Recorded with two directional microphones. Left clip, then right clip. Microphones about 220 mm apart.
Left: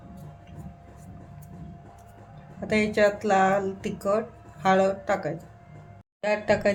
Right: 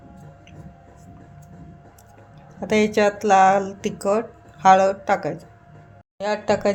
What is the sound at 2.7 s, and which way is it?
A woman's voice, 30° right (ahead or behind).